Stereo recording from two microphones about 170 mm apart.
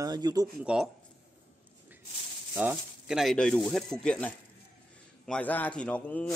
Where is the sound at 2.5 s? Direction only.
10° right (ahead or behind); by 6.3 s 10° left (ahead or behind).